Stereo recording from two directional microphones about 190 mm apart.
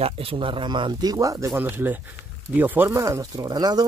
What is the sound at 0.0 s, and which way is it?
Speech, 30° right (ahead or behind).